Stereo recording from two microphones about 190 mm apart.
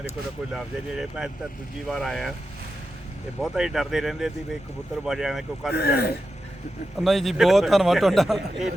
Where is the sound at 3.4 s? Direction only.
5° right (ahead or behind).